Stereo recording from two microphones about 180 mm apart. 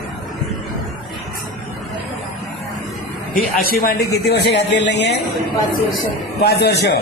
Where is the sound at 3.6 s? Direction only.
55° left (ahead or behind); by 5.1 s 75° left (ahead or behind).